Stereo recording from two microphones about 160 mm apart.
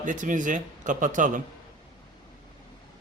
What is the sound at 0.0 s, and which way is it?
Speech, 55° right (ahead or behind).